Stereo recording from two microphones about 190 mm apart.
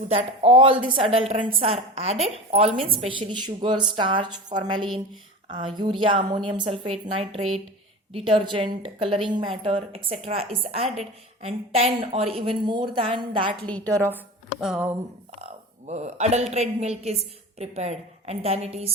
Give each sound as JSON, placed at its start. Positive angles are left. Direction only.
{"t": 0.1, "sound": "a woman's voice", "side_deg": -30}
{"t": 13.9, "sound": "a woman's voice", "side_deg": -15}
{"t": 15.9, "sound": "a woman's voice", "side_deg": -35}